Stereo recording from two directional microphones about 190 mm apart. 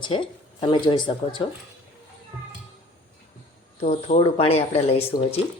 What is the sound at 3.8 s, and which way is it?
Speech, 35° left (ahead or behind).